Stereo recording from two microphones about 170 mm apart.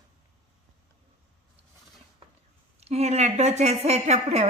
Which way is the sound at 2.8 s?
40° right (ahead or behind).